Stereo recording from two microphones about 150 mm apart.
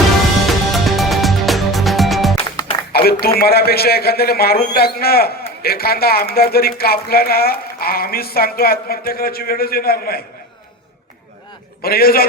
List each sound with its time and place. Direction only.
0.4 s music: centre (ahead or behind)
2.9 s a man's voice: 90° left
11.8 s a man's voice: 85° left